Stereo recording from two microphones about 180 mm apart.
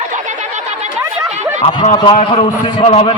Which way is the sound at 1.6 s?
35° left (ahead or behind).